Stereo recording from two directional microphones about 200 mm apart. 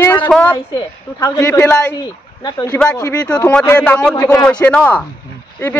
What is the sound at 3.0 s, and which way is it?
A man's voice, 15° left (ahead or behind).